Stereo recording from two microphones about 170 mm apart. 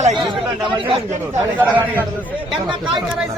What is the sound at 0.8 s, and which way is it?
Speech, 35° right (ahead or behind).